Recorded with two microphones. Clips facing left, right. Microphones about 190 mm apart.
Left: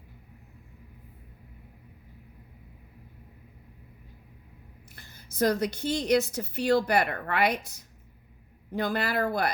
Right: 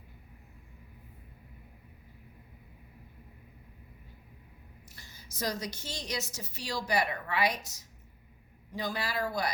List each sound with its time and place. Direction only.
4.9 s a woman's voice: 55° left (ahead or behind)